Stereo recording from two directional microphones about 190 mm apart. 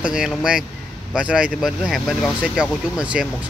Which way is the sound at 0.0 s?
5° right (ahead or behind).